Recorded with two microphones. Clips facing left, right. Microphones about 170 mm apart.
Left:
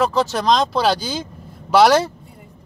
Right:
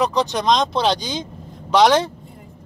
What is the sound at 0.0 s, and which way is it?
Speech, 5° left (ahead or behind).